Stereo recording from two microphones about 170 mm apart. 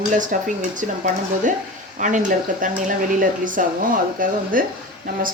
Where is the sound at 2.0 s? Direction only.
50° right (ahead or behind).